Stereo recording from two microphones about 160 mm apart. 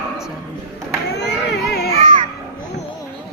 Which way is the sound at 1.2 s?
90° left.